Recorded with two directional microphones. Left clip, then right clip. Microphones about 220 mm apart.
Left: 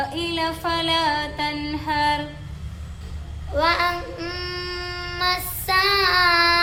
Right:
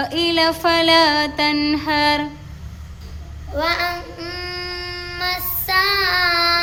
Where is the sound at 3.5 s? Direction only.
5° left (ahead or behind).